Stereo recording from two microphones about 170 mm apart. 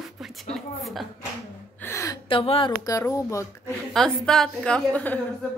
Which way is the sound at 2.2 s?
30° left (ahead or behind).